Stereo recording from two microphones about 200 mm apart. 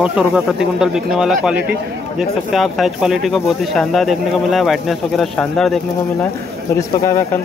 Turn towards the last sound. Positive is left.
turn(degrees=15)  # may be behind; listen again after turning